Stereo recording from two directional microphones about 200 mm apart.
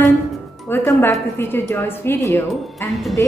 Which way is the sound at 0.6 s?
10° left (ahead or behind).